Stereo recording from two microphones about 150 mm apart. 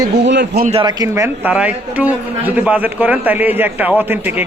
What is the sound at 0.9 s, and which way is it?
A man's voice, 20° right (ahead or behind).